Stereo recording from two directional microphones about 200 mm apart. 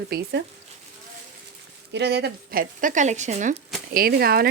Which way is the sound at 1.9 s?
55° right (ahead or behind).